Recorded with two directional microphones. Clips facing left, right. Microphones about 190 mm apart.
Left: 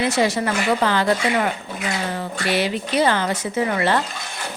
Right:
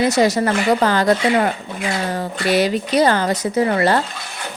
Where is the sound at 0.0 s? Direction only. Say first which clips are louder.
Right 4 dB; 40° right (ahead or behind).